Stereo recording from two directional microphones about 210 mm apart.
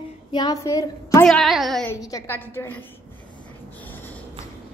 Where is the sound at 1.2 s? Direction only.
Centre (ahead or behind).